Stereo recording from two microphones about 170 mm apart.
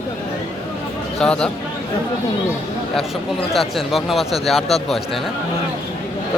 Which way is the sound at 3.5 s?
Centre (ahead or behind).